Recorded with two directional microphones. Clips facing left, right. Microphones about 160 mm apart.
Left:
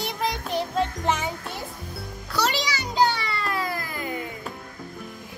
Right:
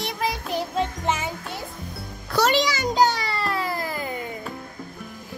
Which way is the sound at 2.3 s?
50° right (ahead or behind).